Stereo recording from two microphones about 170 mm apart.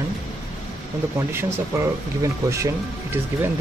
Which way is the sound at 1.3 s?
15° right (ahead or behind).